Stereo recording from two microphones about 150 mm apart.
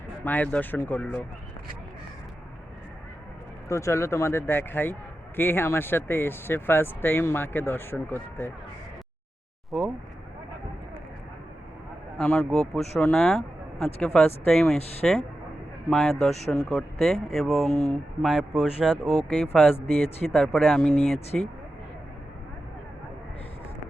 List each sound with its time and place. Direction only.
0.3 s speech: 10° left (ahead or behind)
3.7 s speech: 20° left (ahead or behind)
9.7 s speech: centre (ahead or behind)
12.1 s speech: 5° left (ahead or behind)